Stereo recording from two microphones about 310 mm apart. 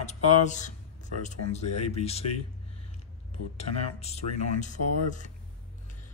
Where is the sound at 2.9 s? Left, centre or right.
Centre.